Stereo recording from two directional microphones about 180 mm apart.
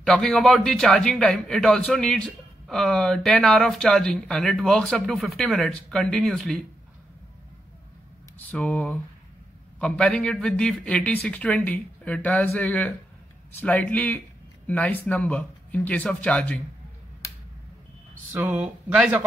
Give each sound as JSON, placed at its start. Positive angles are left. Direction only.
{"t": 0.0, "sound": "a man's voice", "side_deg": 0}
{"t": 8.5, "sound": "a man's voice", "side_deg": 5}
{"t": 18.3, "sound": "speech", "side_deg": -10}